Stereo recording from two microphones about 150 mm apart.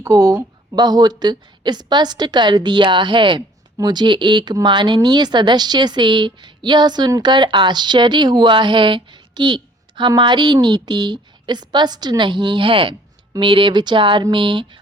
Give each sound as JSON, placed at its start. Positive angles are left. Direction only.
{"t": 0.0, "sound": "a woman's voice", "side_deg": -20}